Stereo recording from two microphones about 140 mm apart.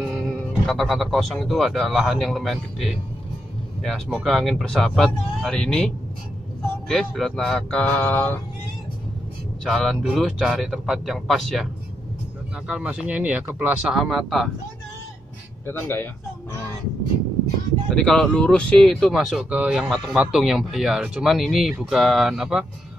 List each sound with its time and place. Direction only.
0.0 s speech: centre (ahead or behind)
9.7 s speech: centre (ahead or behind)
15.6 s speech: 15° left (ahead or behind)
17.8 s speech: 5° left (ahead or behind)